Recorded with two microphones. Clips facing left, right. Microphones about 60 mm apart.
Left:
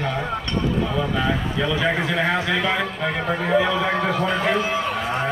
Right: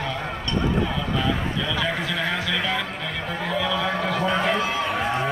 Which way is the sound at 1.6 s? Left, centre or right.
Left.